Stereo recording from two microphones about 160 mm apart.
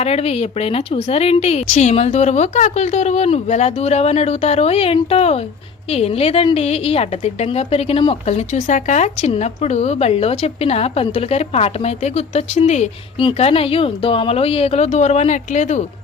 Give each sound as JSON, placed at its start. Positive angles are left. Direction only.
{"t": 0.0, "sound": "a woman's voice", "side_deg": 40}
{"t": 8.5, "sound": "a woman's voice", "side_deg": 50}
{"t": 13.1, "sound": "a woman's voice", "side_deg": 30}